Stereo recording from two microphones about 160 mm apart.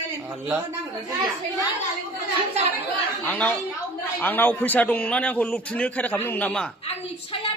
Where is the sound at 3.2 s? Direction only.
10° left (ahead or behind).